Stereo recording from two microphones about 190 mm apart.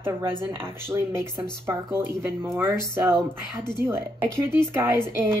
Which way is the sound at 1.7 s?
15° right (ahead or behind).